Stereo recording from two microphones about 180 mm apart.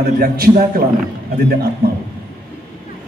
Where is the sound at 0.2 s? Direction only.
55° right (ahead or behind).